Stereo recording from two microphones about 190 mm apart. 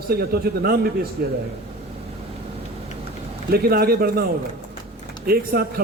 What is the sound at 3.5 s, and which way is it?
A man's voice, 55° right (ahead or behind).